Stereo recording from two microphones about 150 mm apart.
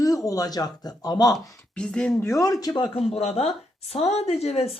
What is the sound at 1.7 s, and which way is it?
Speech, 5° left (ahead or behind).